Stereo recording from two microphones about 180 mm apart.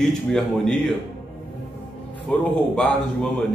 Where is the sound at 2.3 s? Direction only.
5° left (ahead or behind).